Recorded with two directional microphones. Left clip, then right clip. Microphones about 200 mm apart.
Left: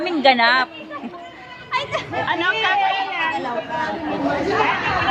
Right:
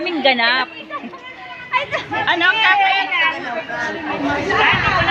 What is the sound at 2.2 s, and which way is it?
Speech, 50° right (ahead or behind).